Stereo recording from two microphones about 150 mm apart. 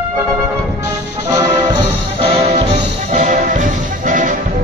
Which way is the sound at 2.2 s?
40° right (ahead or behind).